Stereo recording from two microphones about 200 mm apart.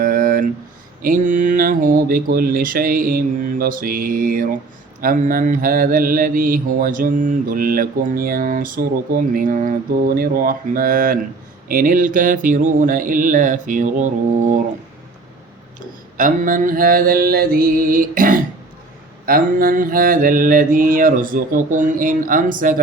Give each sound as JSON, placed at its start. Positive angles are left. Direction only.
{"t": 0.0, "sound": "a sound", "side_deg": -45}
{"t": 1.0, "sound": "mantra", "side_deg": -40}
{"t": 16.1, "sound": "mantra", "side_deg": -40}